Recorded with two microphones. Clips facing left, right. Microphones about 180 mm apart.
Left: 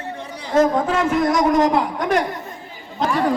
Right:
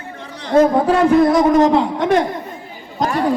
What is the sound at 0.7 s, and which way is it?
A man's voice, 30° right (ahead or behind).